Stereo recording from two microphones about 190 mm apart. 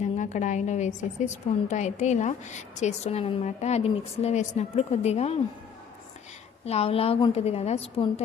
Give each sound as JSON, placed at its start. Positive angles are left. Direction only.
{"t": 0.0, "sound": "a woman's voice", "side_deg": 40}
{"t": 6.7, "sound": "a woman's voice", "side_deg": 30}